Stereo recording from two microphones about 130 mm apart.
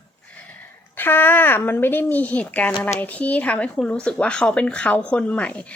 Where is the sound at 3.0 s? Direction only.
10° left (ahead or behind).